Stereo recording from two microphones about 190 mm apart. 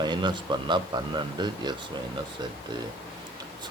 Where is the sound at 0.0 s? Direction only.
25° right (ahead or behind).